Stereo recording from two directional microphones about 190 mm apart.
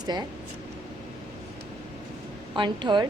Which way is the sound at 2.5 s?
25° right (ahead or behind).